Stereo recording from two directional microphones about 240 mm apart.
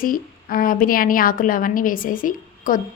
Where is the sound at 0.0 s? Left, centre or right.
Left.